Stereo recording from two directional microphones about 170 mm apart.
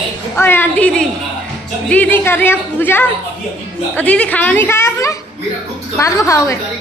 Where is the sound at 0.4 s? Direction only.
10° left (ahead or behind).